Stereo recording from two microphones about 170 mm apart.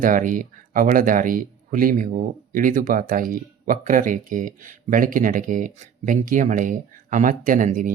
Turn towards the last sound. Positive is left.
turn(degrees=-50)  # may be behind; listen again after turning